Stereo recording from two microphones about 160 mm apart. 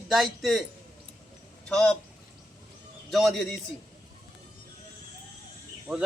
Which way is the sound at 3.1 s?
Centre (ahead or behind).